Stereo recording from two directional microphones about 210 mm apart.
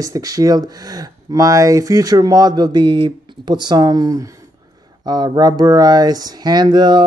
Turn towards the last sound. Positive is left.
turn(degrees=-20)  # may be behind; listen again after turning